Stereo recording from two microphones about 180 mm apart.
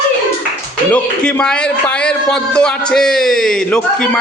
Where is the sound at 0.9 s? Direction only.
10° left (ahead or behind).